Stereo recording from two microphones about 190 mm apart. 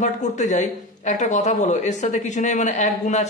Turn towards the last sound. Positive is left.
turn(degrees=40)  # may be behind; listen again after turning